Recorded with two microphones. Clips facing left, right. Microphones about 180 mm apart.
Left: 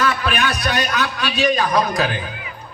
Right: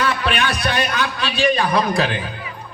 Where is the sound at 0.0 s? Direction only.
30° right (ahead or behind).